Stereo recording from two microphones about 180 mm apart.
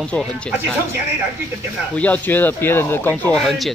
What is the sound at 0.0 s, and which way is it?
Speech, 5° left (ahead or behind).